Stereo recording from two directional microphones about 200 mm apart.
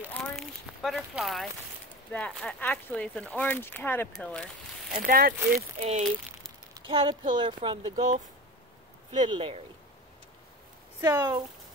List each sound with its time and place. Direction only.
0.1 s speech: 5° left (ahead or behind)
4.9 s speech: 45° right (ahead or behind)
5.8 s speech: 30° right (ahead or behind)
6.7 s a sound: 25° right (ahead or behind)
7.3 s speech: 25° right (ahead or behind)
7.9 s speech: 35° right (ahead or behind)
9.3 s speech: 25° right (ahead or behind)
11.0 s speech: 15° right (ahead or behind)